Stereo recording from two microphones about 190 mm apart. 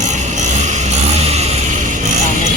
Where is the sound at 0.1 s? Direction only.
40° right (ahead or behind).